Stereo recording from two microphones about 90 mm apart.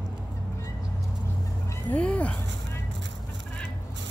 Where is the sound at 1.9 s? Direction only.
15° left (ahead or behind).